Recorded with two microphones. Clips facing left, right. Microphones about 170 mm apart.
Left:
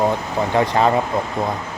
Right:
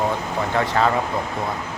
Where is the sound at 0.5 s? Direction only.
15° left (ahead or behind).